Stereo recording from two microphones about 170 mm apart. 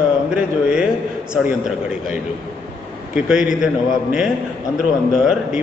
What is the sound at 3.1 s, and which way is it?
A man's voice, 5° right (ahead or behind).